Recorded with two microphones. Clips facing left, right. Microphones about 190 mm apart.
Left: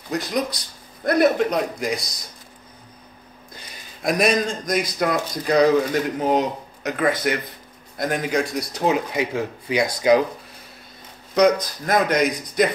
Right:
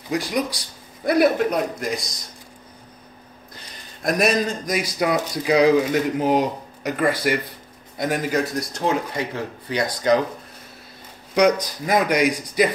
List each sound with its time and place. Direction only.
0.1 s speech: 10° right (ahead or behind)
3.7 s speech: centre (ahead or behind)
11.6 s speech: 10° right (ahead or behind)